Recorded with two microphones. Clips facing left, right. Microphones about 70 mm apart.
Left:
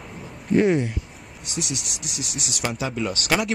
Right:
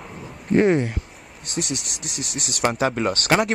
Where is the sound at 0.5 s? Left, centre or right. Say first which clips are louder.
Right 2 dB; right.